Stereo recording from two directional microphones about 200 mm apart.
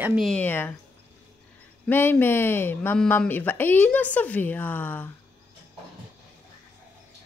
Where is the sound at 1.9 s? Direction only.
10° left (ahead or behind).